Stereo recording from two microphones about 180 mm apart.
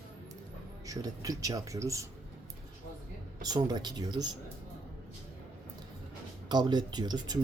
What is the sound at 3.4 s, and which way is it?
Speech, 20° right (ahead or behind).